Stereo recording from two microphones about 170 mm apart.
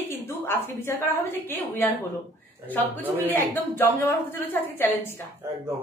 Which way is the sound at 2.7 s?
10° left (ahead or behind).